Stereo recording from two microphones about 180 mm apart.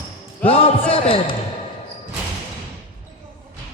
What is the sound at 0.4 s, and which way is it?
Speech, 30° left (ahead or behind).